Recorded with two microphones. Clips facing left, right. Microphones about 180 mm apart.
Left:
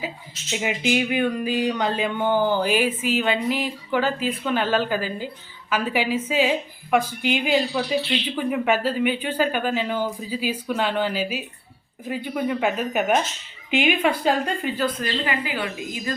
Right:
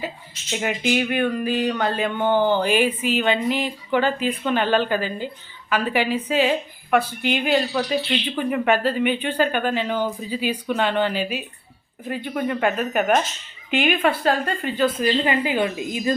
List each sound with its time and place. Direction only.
0.5 s speech: 5° left (ahead or behind)
14.8 s a woman's voice: 25° right (ahead or behind)